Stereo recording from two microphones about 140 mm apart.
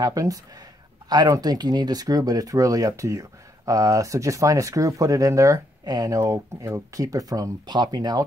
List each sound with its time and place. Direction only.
0.0 s speech: 25° right (ahead or behind)